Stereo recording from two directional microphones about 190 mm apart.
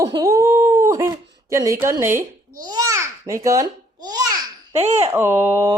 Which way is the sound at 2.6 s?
20° right (ahead or behind).